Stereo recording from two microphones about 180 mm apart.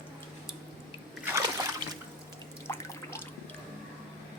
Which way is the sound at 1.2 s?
15° right (ahead or behind).